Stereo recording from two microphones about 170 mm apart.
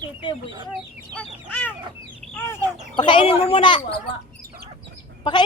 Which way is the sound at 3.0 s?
30° left (ahead or behind).